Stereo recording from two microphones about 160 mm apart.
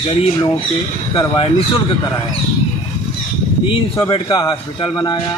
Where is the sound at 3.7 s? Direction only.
35° left (ahead or behind).